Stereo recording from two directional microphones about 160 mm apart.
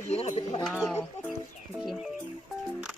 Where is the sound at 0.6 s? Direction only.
5° left (ahead or behind).